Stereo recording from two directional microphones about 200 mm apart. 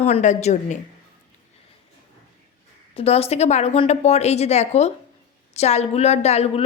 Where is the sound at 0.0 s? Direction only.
35° left (ahead or behind).